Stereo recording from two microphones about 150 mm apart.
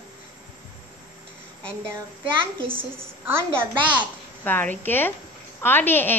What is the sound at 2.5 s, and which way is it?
Speech, 35° right (ahead or behind).